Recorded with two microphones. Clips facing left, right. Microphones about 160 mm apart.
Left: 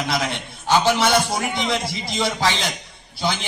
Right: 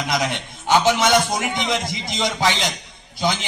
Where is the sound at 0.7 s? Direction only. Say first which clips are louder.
Right 1 dB; 15° right (ahead or behind).